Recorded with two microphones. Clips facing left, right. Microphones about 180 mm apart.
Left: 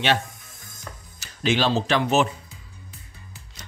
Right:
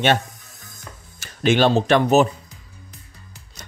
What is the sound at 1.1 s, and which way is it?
Speech, 55° right (ahead or behind).